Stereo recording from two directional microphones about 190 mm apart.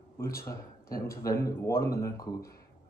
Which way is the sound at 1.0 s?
15° left (ahead or behind).